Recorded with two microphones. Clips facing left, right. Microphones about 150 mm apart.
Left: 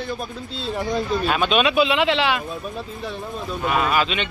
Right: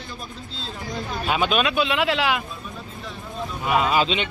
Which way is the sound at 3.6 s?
15° right (ahead or behind).